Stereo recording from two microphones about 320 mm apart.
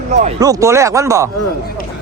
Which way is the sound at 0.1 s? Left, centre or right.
Right.